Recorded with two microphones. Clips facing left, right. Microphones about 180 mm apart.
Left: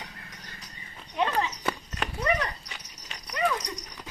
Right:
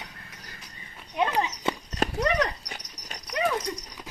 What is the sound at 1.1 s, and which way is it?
Horse, 15° right (ahead or behind).